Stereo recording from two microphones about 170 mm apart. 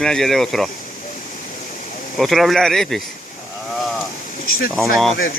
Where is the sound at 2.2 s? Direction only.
Centre (ahead or behind).